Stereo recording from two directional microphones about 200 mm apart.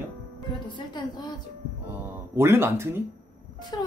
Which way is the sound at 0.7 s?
20° left (ahead or behind).